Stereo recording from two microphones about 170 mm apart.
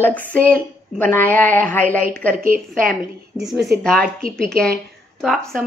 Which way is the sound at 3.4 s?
Centre (ahead or behind).